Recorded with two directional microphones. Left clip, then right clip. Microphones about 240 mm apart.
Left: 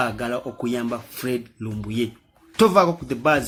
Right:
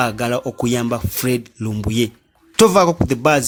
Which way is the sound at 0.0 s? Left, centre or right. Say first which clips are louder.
Right 5 dB; right.